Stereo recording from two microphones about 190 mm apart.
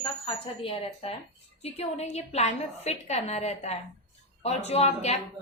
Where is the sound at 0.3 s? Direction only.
30° left (ahead or behind).